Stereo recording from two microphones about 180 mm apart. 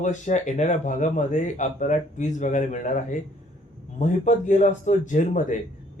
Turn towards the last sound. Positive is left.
turn(degrees=45)  # may be behind; listen again after turning